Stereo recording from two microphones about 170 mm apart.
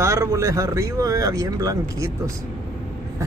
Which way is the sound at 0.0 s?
15° right (ahead or behind).